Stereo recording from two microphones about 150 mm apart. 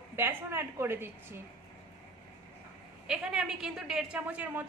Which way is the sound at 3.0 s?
5° right (ahead or behind).